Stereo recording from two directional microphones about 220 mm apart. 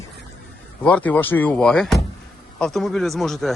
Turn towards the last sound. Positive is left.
turn(degrees=0)  # may be behind; listen again after turning